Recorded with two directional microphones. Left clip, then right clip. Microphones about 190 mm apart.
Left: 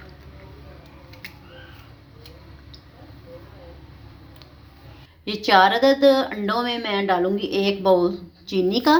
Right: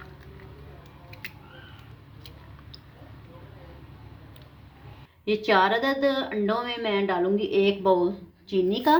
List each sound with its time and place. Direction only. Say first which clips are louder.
5.2 s speech: left 5 dB; 30° left (ahead or behind)